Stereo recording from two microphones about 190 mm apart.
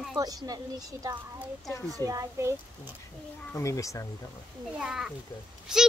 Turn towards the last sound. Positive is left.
turn(degrees=-5)  # may be behind; listen again after turning